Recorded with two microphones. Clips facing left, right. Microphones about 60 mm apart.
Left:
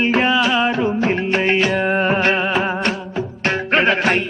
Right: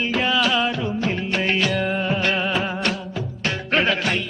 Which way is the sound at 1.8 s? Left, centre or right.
Left.